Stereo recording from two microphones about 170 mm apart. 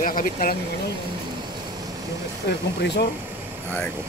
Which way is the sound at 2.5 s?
85° left.